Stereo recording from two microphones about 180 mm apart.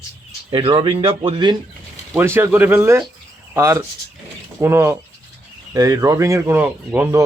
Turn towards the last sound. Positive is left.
turn(degrees=-10)  # may be behind; listen again after turning